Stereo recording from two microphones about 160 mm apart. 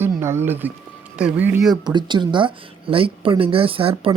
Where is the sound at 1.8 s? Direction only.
30° right (ahead or behind).